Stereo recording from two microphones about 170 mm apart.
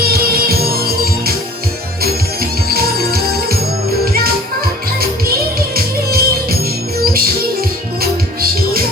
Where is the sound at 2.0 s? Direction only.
65° right (ahead or behind).